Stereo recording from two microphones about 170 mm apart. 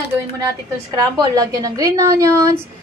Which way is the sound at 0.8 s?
25° right (ahead or behind).